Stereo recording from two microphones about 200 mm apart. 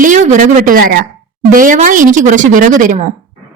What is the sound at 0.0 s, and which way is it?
A woman's voice, 40° right (ahead or behind).